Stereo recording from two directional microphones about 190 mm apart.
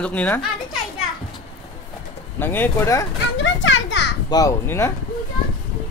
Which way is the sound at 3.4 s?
75° left (ahead or behind).